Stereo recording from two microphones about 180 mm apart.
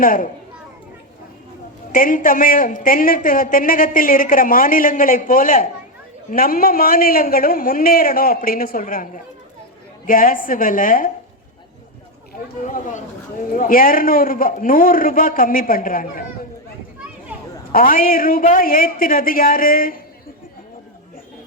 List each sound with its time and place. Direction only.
0.0 s a man's voice: 50° left (ahead or behind)
1.9 s a man's voice: 50° left (ahead or behind)
12.6 s a man's voice: 45° left (ahead or behind)
17.7 s a man's voice: 50° left (ahead or behind)